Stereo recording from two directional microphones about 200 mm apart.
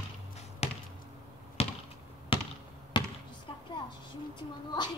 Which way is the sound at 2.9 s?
25° left (ahead or behind).